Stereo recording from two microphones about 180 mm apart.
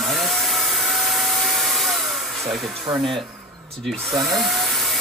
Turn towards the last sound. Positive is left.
turn(degrees=0)  # may be behind; listen again after turning